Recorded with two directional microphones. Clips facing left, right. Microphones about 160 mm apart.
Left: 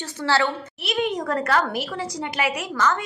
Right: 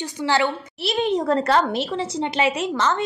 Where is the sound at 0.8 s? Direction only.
30° right (ahead or behind).